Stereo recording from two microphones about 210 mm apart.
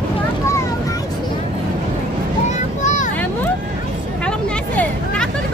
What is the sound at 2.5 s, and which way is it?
Vehicle, 35° left (ahead or behind).